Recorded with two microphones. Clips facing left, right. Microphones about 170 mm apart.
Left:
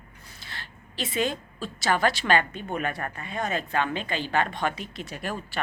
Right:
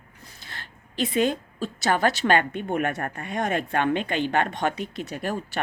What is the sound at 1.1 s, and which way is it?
A woman's voice, 50° right (ahead or behind).